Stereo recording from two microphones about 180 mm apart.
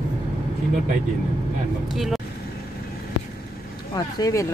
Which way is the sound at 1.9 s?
Centre (ahead or behind).